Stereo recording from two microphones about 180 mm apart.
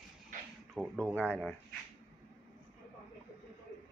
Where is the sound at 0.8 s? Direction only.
5° right (ahead or behind).